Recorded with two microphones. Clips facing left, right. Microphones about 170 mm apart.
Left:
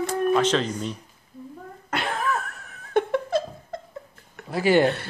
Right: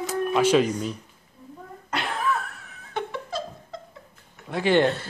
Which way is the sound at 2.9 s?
55° left (ahead or behind).